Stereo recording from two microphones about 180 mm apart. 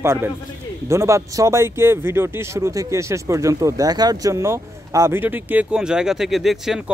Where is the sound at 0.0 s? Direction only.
15° right (ahead or behind).